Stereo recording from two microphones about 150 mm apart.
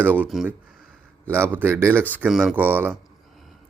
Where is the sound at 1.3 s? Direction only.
15° right (ahead or behind).